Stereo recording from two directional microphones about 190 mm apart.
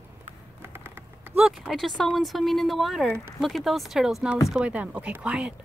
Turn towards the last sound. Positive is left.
turn(degrees=-5)  # may be behind; listen again after turning